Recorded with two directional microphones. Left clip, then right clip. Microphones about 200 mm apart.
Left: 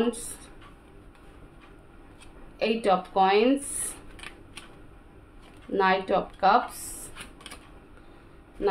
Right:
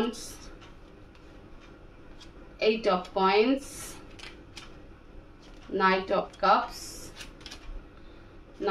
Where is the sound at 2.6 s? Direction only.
45° left (ahead or behind).